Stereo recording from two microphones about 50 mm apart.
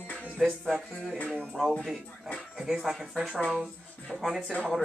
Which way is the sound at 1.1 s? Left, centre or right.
Left.